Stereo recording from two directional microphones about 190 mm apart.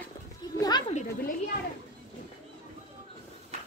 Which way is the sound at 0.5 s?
20° left (ahead or behind).